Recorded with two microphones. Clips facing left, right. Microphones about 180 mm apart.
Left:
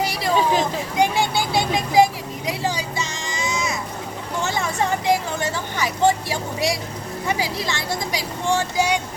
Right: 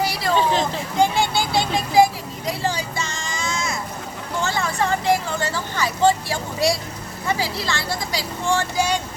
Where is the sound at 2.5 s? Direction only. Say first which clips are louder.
Right 1 dB; 15° left (ahead or behind).